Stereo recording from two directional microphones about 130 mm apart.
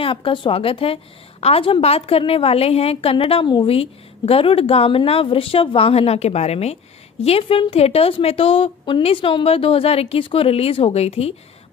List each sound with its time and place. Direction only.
0.0 s a woman's voice: 40° left (ahead or behind)